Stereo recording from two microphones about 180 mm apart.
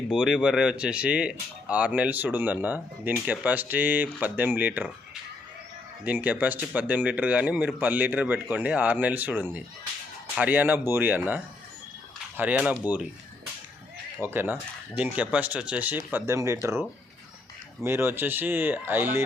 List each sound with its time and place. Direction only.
0.1 s speech: 5° right (ahead or behind)
6.2 s speech: 10° right (ahead or behind)
14.2 s speech: 10° right (ahead or behind)
17.8 s speech: 15° right (ahead or behind)